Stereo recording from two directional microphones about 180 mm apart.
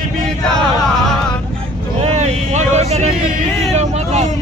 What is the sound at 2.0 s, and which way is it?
Vehicle, 40° right (ahead or behind).